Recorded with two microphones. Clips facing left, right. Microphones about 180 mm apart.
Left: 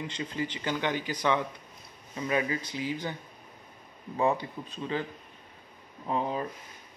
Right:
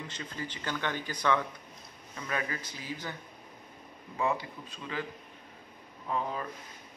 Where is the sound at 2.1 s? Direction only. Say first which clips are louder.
Left 6 dB; 15° left (ahead or behind).